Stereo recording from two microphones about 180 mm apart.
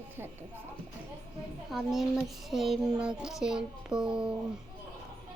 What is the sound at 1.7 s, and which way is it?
Child singing, centre (ahead or behind).